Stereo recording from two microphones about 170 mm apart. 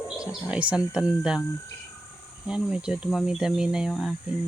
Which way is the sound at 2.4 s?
5° right (ahead or behind).